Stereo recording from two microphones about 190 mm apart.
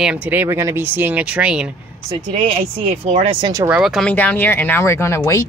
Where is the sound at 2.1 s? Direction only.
25° right (ahead or behind).